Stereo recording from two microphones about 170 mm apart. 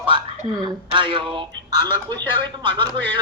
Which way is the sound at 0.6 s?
30° right (ahead or behind).